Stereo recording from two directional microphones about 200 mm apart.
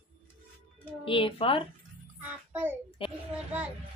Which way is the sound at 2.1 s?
10° right (ahead or behind).